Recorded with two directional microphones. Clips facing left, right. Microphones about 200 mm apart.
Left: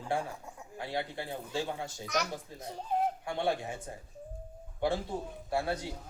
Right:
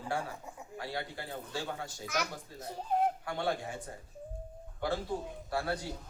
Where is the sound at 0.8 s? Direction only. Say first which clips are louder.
Left 3 dB; 20° left (ahead or behind).